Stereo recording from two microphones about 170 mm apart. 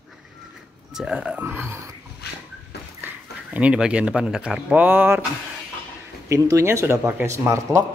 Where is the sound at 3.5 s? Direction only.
5° right (ahead or behind).